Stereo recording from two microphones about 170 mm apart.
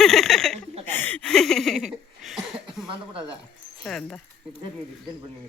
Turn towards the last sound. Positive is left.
turn(degrees=0)  # may be behind; listen again after turning